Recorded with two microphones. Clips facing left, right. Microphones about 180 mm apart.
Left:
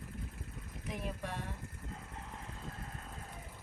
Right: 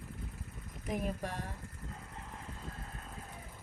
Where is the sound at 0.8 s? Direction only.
45° right (ahead or behind).